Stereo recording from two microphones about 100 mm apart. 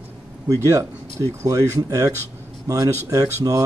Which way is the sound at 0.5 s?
30° right (ahead or behind).